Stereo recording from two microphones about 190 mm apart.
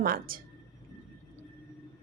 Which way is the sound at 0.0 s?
50° right (ahead or behind).